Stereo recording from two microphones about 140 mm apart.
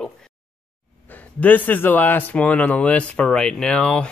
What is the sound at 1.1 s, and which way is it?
Speech, 10° left (ahead or behind).